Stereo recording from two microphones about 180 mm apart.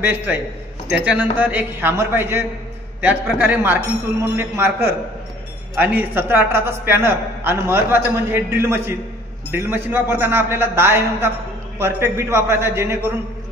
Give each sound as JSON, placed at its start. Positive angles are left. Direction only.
{"t": 0.0, "sound": "a man's voice", "side_deg": -10}